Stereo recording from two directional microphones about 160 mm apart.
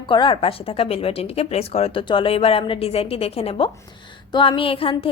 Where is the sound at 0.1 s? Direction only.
30° left (ahead or behind).